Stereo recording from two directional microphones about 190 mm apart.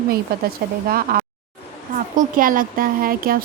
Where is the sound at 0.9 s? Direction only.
50° right (ahead or behind).